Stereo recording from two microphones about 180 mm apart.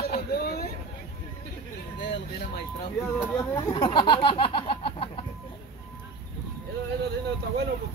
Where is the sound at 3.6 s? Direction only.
25° left (ahead or behind).